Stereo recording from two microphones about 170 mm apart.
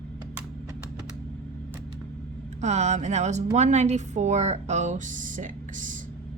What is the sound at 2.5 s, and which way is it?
A woman's voice, 40° right (ahead or behind).